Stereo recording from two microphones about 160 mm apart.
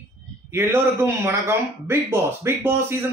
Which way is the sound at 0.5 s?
15° right (ahead or behind).